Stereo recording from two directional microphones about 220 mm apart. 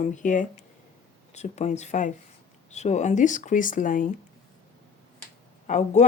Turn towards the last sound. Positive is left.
turn(degrees=30)  # may be behind; listen again after turning